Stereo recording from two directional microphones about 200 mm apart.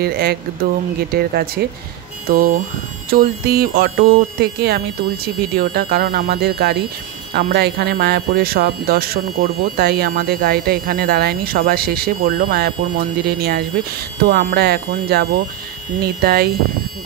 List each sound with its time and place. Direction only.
0.0 s speech: 50° right (ahead or behind)